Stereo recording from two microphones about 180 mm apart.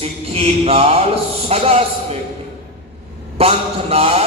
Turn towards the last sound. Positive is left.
turn(degrees=-35)  # may be behind; listen again after turning